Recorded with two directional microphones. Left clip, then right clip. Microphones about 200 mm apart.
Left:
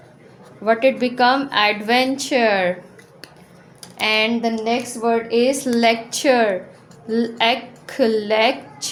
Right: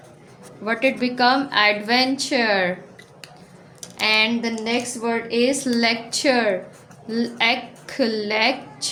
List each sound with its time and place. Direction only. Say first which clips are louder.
0.6 s a woman's voice: left 5 dB; 15° left (ahead or behind)
3.9 s a woman's voice: left 1 dB; 20° left (ahead or behind)